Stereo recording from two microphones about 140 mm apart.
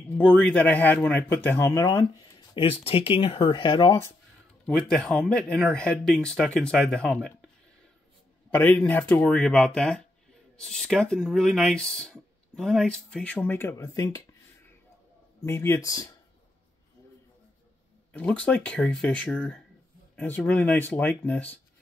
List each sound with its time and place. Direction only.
0.2 s a man's voice: 10° left (ahead or behind)
2.5 s speech: 45° left (ahead or behind); by 4.1 s 25° left (ahead or behind)
4.6 s speech: 5° left (ahead or behind)
8.5 s a man's voice: 10° left (ahead or behind)
15.4 s speech: 20° left (ahead or behind)
18.1 s a man's voice: 10° left (ahead or behind)